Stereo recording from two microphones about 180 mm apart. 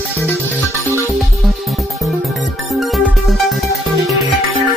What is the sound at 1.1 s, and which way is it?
Music, centre (ahead or behind).